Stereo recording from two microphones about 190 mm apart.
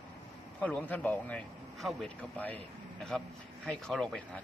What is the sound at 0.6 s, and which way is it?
A man's voice, 5° left (ahead or behind).